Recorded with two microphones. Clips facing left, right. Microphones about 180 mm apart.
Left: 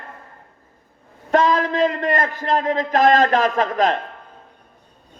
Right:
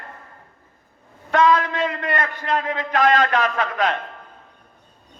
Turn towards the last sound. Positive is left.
turn(degrees=40)  # may be behind; listen again after turning